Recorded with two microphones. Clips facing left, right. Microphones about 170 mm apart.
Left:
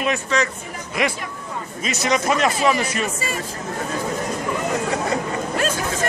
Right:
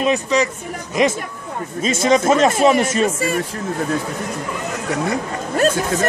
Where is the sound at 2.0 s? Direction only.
25° right (ahead or behind).